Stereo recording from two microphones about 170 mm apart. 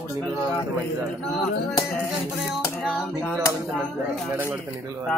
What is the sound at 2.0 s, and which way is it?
Speech, centre (ahead or behind).